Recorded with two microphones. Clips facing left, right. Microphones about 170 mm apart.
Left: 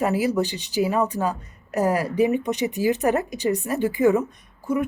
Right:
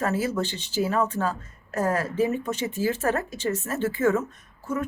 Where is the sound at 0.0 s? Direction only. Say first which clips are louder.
Left 4 dB; 15° left (ahead or behind).